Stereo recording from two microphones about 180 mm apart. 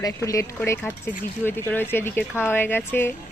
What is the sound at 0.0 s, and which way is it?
Speech, 20° left (ahead or behind).